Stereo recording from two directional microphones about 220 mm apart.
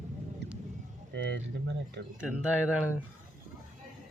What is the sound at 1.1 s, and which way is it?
Speech, 50° right (ahead or behind).